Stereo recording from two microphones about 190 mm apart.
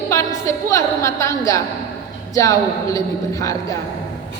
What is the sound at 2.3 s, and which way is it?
A woman's voice, 15° left (ahead or behind).